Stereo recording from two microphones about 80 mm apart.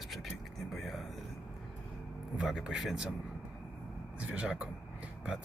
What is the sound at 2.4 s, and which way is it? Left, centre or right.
Speech, centre.